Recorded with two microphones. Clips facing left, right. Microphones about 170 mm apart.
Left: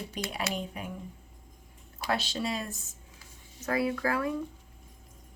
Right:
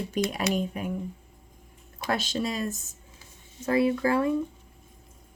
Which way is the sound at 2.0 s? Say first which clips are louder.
Right 3 dB; 45° right (ahead or behind).